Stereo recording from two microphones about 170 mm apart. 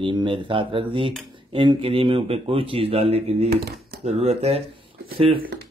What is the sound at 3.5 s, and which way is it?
Speech, 70° right (ahead or behind).